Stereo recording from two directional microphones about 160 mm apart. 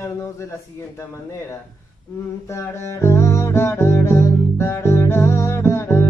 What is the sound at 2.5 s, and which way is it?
Music, 15° left (ahead or behind).